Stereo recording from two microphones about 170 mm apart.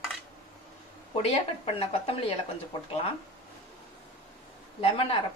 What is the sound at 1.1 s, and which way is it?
Speech, 40° left (ahead or behind).